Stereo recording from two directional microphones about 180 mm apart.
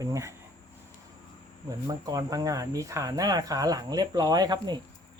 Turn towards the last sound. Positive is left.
turn(degrees=-20)  # may be behind; listen again after turning